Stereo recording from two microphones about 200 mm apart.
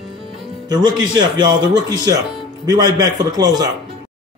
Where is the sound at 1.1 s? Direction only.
20° right (ahead or behind).